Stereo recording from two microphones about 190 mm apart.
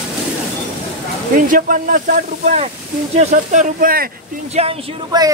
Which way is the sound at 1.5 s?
45° right (ahead or behind).